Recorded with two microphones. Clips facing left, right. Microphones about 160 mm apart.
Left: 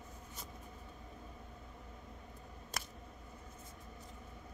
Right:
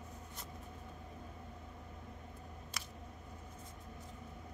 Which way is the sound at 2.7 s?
50° left (ahead or behind).